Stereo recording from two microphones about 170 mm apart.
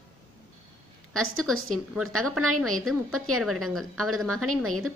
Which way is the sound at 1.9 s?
Centre (ahead or behind).